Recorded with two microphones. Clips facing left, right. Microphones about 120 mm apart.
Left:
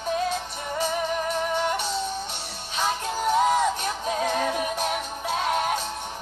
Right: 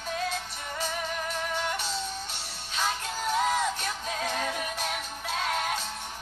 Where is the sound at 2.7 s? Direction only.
20° left (ahead or behind).